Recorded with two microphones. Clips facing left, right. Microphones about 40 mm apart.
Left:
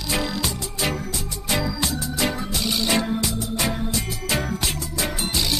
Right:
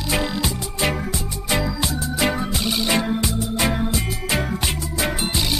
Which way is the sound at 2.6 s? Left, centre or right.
Centre.